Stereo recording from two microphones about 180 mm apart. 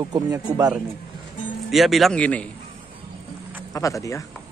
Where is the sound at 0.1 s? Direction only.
20° right (ahead or behind).